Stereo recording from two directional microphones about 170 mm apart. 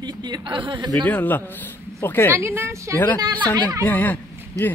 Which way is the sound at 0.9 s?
10° left (ahead or behind).